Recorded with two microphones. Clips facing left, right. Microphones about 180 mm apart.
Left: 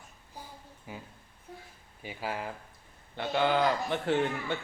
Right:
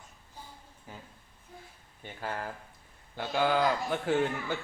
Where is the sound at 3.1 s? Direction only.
5° right (ahead or behind).